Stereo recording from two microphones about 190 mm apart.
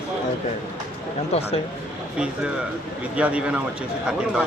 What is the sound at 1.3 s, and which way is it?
Speech, 30° left (ahead or behind).